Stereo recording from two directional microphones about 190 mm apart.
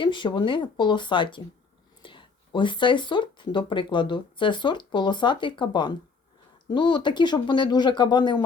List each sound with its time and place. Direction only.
0.0 s speech: 25° left (ahead or behind)